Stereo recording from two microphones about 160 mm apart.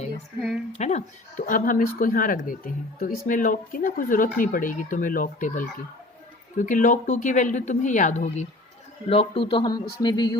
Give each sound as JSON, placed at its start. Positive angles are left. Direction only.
{"t": 0.3, "sound": "a sound", "side_deg": 0}
{"t": 0.7, "sound": "speech", "side_deg": 45}
{"t": 9.0, "sound": "speech", "side_deg": 35}